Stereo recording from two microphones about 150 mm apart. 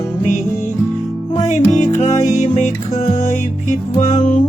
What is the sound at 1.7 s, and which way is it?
Music, 50° left (ahead or behind).